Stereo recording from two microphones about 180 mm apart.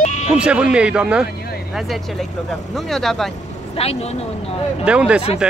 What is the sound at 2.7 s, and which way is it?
Speech, centre (ahead or behind).